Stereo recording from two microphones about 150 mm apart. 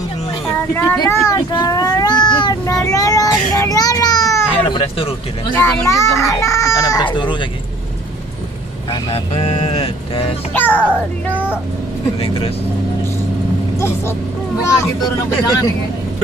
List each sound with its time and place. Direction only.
0.9 s child singing: 20° left (ahead or behind)
4.6 s a sound: 35° left (ahead or behind)
5.5 s a child's voice: 15° left (ahead or behind); by 7.3 s 30° left (ahead or behind)
9.1 s a sound: 40° left (ahead or behind)
10.5 s a child's voice: 10° left (ahead or behind)
13.7 s vehicle: 15° left (ahead or behind)
14.6 s a child's voice: 20° left (ahead or behind)